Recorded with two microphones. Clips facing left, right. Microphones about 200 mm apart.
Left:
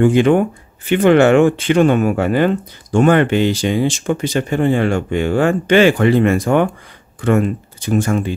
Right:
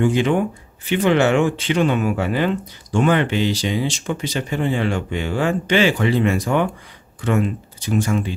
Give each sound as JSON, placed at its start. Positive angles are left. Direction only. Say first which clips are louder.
{"t": 0.0, "sound": "speech", "louder": "left 6 dB", "side_deg": 55}